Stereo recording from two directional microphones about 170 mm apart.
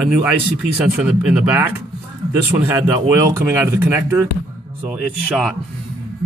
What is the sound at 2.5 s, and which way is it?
Speech, 30° right (ahead or behind).